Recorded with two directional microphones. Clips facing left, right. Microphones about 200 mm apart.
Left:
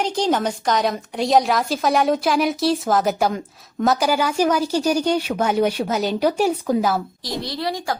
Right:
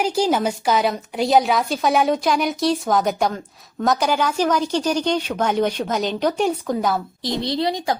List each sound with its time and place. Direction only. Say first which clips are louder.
0.0 s a woman's voice: right 1 dB; 10° right (ahead or behind)
7.4 s a woman's voice: right 4 dB; 20° right (ahead or behind)